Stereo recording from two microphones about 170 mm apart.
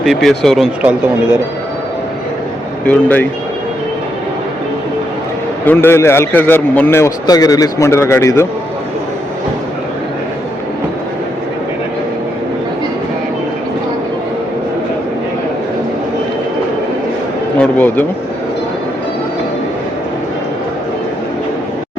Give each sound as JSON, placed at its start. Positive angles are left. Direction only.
{"t": 0.0, "sound": "speech", "side_deg": 0}
{"t": 2.8, "sound": "a man's voice", "side_deg": 10}
{"t": 5.6, "sound": "a man's voice", "side_deg": 10}
{"t": 17.6, "sound": "a man's voice", "side_deg": 10}